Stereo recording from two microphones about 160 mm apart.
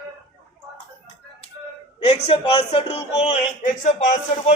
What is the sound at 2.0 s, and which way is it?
A man's voice, 40° left (ahead or behind).